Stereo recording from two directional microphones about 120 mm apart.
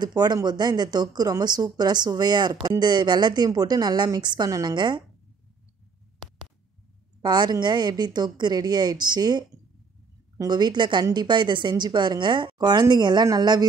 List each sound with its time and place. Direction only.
0.0 s a woman's voice: 35° right (ahead or behind)
6.2 s a sound: centre (ahead or behind)
7.2 s a woman's voice: 35° right (ahead or behind)